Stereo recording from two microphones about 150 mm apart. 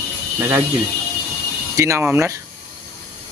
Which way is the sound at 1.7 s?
20° right (ahead or behind).